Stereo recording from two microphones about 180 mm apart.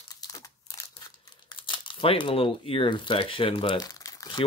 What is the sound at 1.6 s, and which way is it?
Speech, 25° left (ahead or behind).